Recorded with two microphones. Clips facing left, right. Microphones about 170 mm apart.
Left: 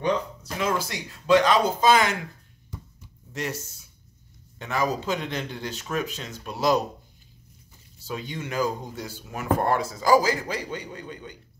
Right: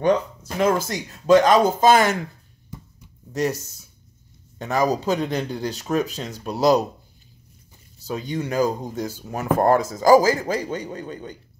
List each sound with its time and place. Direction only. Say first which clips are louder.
0.0 s speech: right 6 dB; 50° right (ahead or behind)
3.3 s speech: right 8 dB; 40° right (ahead or behind)
8.0 s speech: right 6 dB; 40° right (ahead or behind)